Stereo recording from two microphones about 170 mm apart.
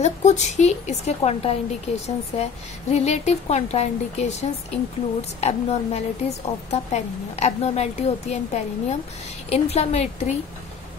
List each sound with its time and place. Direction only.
0.0 s a woman's voice: 45° left (ahead or behind)